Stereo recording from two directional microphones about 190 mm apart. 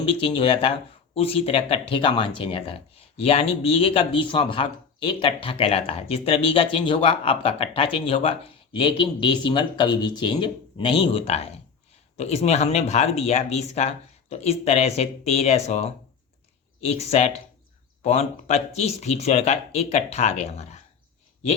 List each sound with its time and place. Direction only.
0.3 s speech: 30° left (ahead or behind)
16.9 s speech: 35° left (ahead or behind)